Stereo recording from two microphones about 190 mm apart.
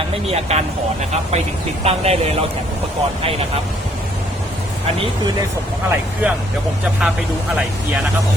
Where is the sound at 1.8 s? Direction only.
35° right (ahead or behind).